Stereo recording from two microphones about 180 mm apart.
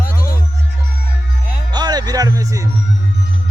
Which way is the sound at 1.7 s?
25° right (ahead or behind).